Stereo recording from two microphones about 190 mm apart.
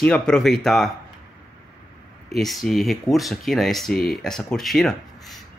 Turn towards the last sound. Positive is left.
turn(degrees=0)  # may be behind; listen again after turning